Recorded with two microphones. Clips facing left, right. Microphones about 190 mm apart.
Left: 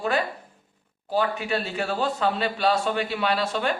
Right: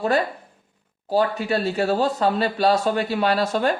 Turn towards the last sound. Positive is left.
turn(degrees=-40)  # may be behind; listen again after turning